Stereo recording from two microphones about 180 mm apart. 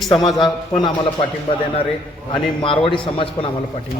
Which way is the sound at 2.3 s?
30° left (ahead or behind).